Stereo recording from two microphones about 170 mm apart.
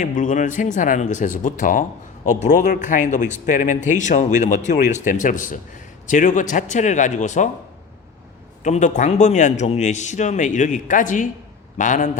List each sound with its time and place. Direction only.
0.0 s speech: 50° left (ahead or behind)
8.6 s speech: 45° left (ahead or behind)